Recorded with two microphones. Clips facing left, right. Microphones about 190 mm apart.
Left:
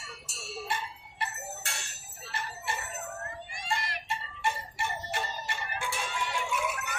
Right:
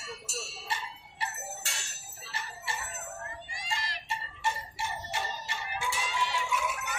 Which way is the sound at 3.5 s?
55° left (ahead or behind).